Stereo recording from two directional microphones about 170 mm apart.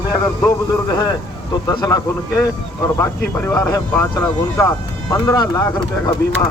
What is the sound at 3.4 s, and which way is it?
Speech, 15° left (ahead or behind).